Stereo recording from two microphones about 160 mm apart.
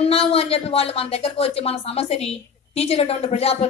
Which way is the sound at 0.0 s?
40° left (ahead or behind).